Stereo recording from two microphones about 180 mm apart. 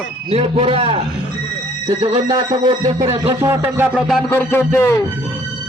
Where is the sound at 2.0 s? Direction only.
25° right (ahead or behind).